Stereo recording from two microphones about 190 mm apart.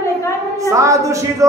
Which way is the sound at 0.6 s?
15° right (ahead or behind).